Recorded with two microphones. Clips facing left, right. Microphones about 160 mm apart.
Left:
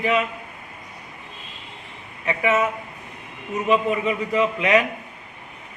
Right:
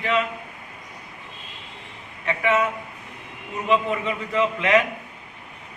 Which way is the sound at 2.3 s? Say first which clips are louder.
Left 1 dB; 20° left (ahead or behind).